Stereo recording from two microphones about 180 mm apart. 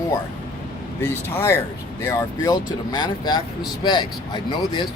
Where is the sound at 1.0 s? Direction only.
15° left (ahead or behind).